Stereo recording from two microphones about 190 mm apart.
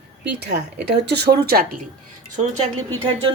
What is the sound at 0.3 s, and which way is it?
Speech, 60° right (ahead or behind).